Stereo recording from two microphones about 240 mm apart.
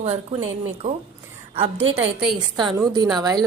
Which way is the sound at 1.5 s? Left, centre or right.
Right.